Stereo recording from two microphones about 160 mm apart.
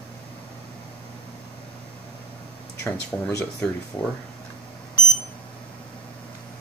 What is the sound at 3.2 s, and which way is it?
Speech, 5° left (ahead or behind).